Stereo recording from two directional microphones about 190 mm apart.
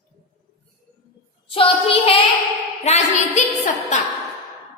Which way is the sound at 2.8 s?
35° left (ahead or behind).